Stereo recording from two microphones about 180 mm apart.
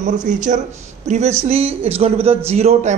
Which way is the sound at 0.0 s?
45° right (ahead or behind).